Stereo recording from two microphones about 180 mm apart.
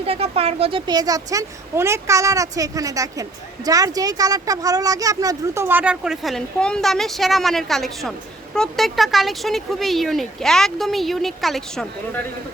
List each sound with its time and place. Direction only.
0.0 s speech: 35° right (ahead or behind); by 11.9 s centre (ahead or behind)